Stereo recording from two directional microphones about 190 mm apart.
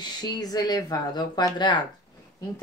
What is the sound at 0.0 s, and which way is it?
A woman's voice, 20° left (ahead or behind).